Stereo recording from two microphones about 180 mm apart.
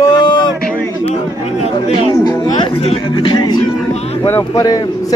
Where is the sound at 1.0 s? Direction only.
35° left (ahead or behind).